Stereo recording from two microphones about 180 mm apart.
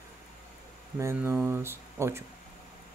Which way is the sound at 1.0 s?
15° right (ahead or behind).